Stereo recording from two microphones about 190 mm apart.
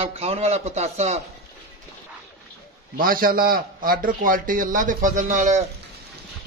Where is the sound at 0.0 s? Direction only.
30° right (ahead or behind).